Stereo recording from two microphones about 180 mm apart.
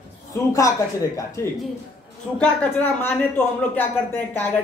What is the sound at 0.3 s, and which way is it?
Speech, 20° left (ahead or behind).